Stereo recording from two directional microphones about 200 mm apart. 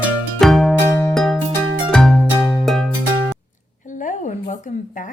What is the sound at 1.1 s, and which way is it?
Music, centre (ahead or behind).